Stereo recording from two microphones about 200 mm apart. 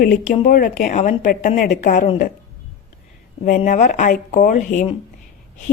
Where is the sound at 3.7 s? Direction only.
35° left (ahead or behind).